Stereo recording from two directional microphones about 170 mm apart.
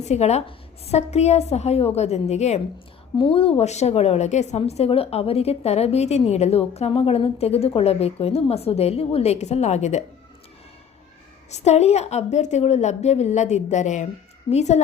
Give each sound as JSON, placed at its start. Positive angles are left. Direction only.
{"t": 0.0, "sound": "a woman's voice", "side_deg": 40}
{"t": 11.5, "sound": "a woman's voice", "side_deg": 40}